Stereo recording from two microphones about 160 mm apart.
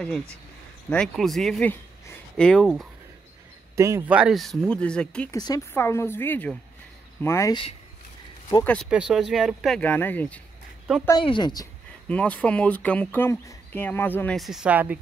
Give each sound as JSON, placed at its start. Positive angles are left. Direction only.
{"t": 0.8, "sound": "speech", "side_deg": 5}
{"t": 3.7, "sound": "speech", "side_deg": -20}
{"t": 4.1, "sound": "speech", "side_deg": -5}
{"t": 5.3, "sound": "speech", "side_deg": 20}
{"t": 8.8, "sound": "speech", "side_deg": -5}
{"t": 11.2, "sound": "a woman's voice", "side_deg": 30}
{"t": 12.1, "sound": "speech", "side_deg": 10}